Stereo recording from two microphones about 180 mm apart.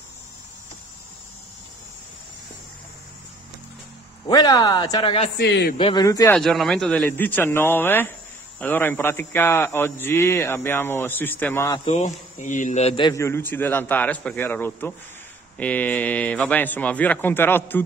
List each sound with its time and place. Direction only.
4.3 s speech: 20° left (ahead or behind)
5.4 s a man's voice: 65° left (ahead or behind)
5.8 s speech: 25° left (ahead or behind)
6.3 s a man's voice: centre (ahead or behind)
11.8 s a man's voice: 40° left (ahead or behind)
13.1 s a man's voice: 15° left (ahead or behind)